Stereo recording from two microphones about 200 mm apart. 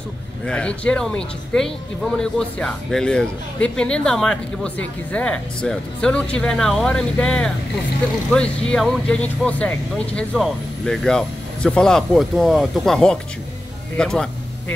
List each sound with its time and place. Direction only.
0.5 s speech: 5° left (ahead or behind)